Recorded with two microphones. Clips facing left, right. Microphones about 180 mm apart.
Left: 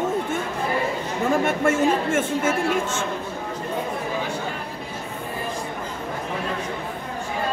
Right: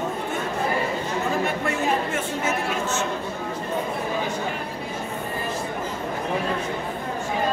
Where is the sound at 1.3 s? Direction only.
50° left (ahead or behind).